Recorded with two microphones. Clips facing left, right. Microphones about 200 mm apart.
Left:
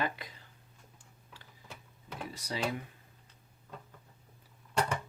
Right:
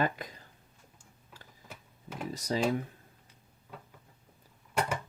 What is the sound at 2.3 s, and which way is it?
Speech, 40° right (ahead or behind).